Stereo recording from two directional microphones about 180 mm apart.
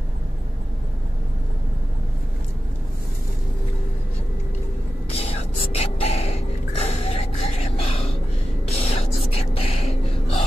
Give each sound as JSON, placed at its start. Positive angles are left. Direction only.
{"t": 5.1, "sound": "gasp", "side_deg": 35}
{"t": 8.6, "sound": "spray", "side_deg": 35}
{"t": 9.3, "sound": "gasp", "side_deg": 35}